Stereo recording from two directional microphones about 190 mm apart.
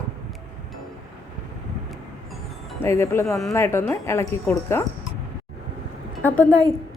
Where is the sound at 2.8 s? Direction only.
15° left (ahead or behind).